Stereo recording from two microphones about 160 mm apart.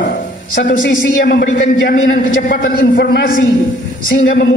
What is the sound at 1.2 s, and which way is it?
A man's voice, 65° left (ahead or behind).